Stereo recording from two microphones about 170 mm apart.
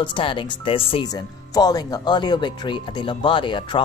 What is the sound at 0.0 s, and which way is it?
A woman's voice, 30° left (ahead or behind).